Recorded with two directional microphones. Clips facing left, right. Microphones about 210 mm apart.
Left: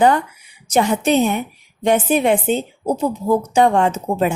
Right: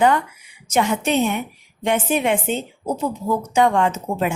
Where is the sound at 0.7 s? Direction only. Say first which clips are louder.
Left 3 dB; 35° left (ahead or behind).